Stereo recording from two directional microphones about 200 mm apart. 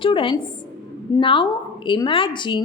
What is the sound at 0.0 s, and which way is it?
Speech, 25° left (ahead or behind).